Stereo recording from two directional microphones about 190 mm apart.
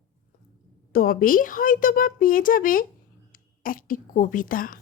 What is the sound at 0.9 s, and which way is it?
Speech, 50° left (ahead or behind).